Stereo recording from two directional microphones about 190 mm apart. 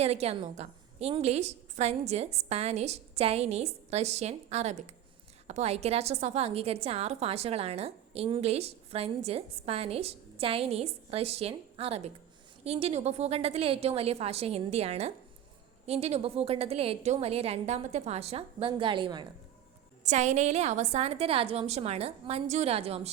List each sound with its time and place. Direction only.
0.0 s a woman's voice: 35° right (ahead or behind)
20.1 s a woman's voice: 40° right (ahead or behind)